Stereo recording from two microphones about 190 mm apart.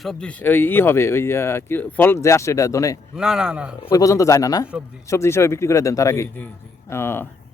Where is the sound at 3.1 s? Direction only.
5° right (ahead or behind).